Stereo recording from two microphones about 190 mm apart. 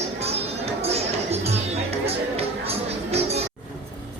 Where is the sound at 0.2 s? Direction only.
35° right (ahead or behind).